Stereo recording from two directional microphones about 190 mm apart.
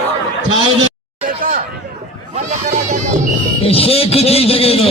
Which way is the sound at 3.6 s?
30° left (ahead or behind).